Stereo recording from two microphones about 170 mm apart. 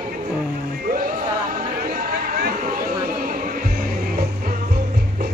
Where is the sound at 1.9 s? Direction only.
60° right (ahead or behind).